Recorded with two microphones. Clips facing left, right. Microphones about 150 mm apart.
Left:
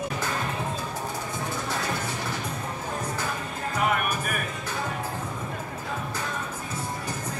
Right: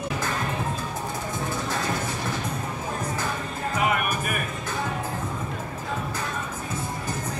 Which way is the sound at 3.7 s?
5° right (ahead or behind).